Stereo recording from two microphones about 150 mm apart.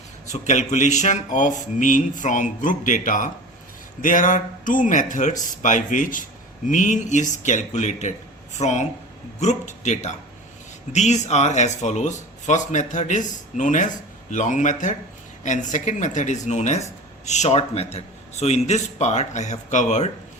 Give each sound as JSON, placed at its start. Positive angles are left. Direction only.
{"t": 0.3, "sound": "speech", "side_deg": 50}